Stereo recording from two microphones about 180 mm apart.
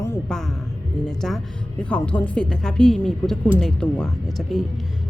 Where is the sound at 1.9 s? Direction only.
5° left (ahead or behind).